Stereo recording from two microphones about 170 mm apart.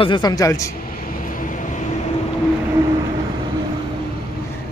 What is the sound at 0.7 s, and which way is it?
Vehicle, 60° left (ahead or behind).